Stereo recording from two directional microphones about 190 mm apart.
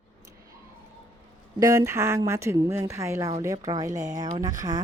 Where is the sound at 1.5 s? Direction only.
15° right (ahead or behind).